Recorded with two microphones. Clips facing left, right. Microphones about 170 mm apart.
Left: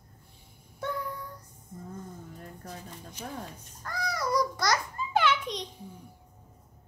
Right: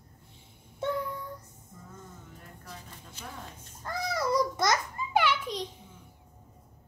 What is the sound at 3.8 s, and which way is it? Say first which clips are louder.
Babbling: right 2 dB; 25° right (ahead or behind).